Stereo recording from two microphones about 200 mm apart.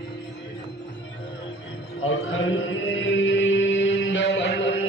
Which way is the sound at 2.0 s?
80° left.